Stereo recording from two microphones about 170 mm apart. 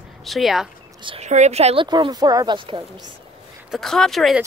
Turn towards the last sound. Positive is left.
turn(degrees=0)  # may be behind; listen again after turning